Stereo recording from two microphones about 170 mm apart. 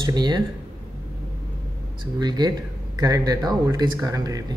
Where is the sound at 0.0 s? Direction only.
25° right (ahead or behind).